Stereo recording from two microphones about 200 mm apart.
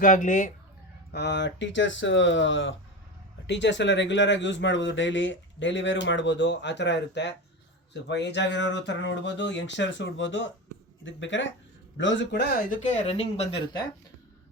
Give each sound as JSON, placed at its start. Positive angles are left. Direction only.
{"t": 0.0, "sound": "speech", "side_deg": 40}
{"t": 1.1, "sound": "speech", "side_deg": 60}
{"t": 12.8, "sound": "speech", "side_deg": 35}